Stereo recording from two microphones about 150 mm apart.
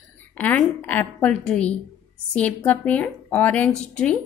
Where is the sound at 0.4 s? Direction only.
10° left (ahead or behind).